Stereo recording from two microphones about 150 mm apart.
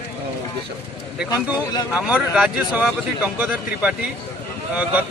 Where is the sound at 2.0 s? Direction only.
10° right (ahead or behind).